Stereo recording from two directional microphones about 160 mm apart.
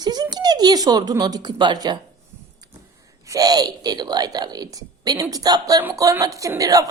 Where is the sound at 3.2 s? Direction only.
25° right (ahead or behind).